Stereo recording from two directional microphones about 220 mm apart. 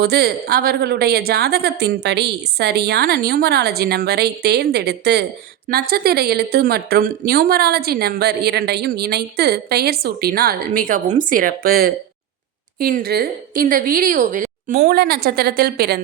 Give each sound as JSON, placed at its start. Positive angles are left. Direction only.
{"t": 0.0, "sound": "a woman's voice", "side_deg": -45}